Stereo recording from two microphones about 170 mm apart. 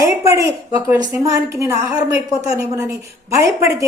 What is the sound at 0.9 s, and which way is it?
A woman's voice, 20° right (ahead or behind).